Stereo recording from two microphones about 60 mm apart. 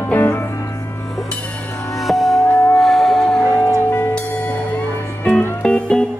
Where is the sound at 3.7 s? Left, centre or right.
Left.